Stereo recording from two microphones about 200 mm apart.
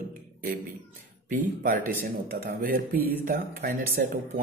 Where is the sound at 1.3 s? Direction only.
45° right (ahead or behind).